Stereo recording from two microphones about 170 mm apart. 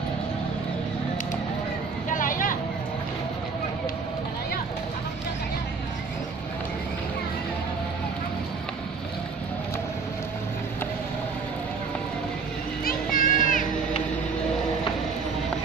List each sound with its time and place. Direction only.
2.0 s vehicle: 50° left (ahead or behind)
12.8 s music: 55° left (ahead or behind)